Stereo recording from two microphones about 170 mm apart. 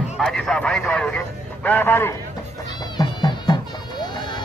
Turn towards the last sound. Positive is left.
turn(degrees=25)  # may be behind; listen again after turning